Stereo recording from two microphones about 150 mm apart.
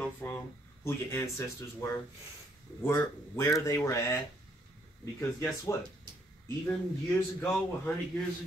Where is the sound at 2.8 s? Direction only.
15° left (ahead or behind).